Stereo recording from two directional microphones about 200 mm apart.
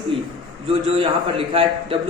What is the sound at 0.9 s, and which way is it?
A man's voice, 25° right (ahead or behind).